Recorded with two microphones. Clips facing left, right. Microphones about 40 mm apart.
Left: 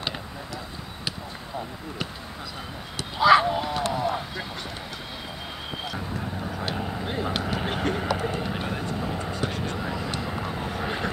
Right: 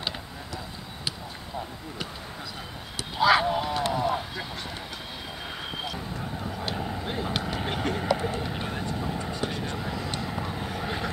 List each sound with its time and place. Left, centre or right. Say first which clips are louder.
3.0 s speech: left 4 dB; centre
3.9 s a sound: even; centre
6.7 s vehicle: left 1 dB; centre
7.4 s a sound: left 2 dB; centre
8.4 s vehicle: left 2 dB; centre
9.8 s horse: left 2 dB; centre
10.2 s vehicle: left 2 dB; centre